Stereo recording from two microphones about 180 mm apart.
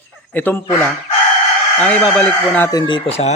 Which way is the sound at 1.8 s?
5° left (ahead or behind).